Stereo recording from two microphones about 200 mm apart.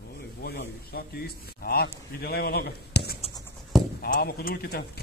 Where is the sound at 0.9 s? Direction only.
50° left (ahead or behind).